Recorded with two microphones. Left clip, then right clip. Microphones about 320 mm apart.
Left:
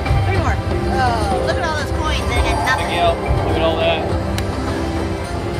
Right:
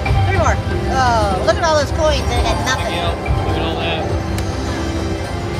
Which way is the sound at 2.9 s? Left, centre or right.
Left.